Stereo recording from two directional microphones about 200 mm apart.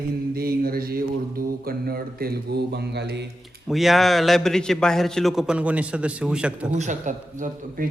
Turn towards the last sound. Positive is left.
turn(degrees=-40)  # may be behind; listen again after turning